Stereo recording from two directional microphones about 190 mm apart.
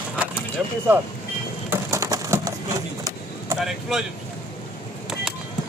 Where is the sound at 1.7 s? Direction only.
15° right (ahead or behind).